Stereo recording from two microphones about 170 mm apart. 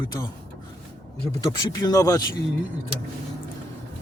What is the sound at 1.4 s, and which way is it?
Speech, 20° left (ahead or behind).